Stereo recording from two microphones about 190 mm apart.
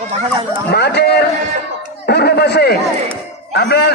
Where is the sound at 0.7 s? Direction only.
60° left (ahead or behind).